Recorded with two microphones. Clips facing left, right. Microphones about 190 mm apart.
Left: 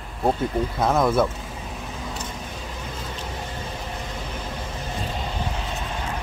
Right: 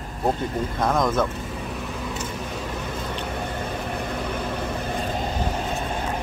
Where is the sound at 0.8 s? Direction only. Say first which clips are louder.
Left 2 dB; 5° left (ahead or behind).